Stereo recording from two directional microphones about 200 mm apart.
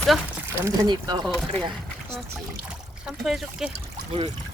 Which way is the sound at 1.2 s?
5° left (ahead or behind).